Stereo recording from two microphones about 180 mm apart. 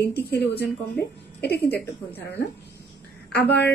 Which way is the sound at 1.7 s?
10° left (ahead or behind).